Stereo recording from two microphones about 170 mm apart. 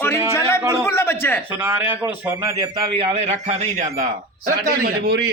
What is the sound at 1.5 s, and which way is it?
A man's voice, 10° right (ahead or behind).